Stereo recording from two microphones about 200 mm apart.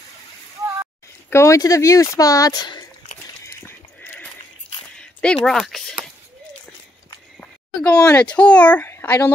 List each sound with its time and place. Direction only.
1.3 s speech: 15° left (ahead or behind)
3.6 s a sound: 10° left (ahead or behind)
7.3 s a child's voice: 5° left (ahead or behind)